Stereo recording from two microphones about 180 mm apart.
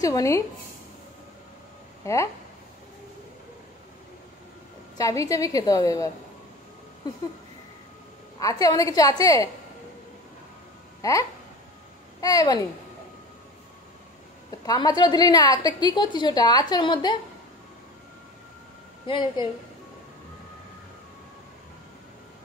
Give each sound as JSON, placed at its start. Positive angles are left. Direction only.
{"t": 0.0, "sound": "a woman's voice", "side_deg": 20}
{"t": 2.0, "sound": "speech", "side_deg": 15}
{"t": 4.9, "sound": "a woman's voice", "side_deg": 20}
{"t": 8.4, "sound": "a woman's voice", "side_deg": 20}
{"t": 11.0, "sound": "a woman's voice", "side_deg": 20}
{"t": 14.7, "sound": "a woman's voice", "side_deg": 20}
{"t": 19.0, "sound": "a woman's voice", "side_deg": 25}